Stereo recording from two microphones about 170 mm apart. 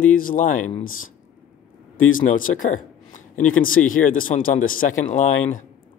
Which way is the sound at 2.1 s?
50° left (ahead or behind).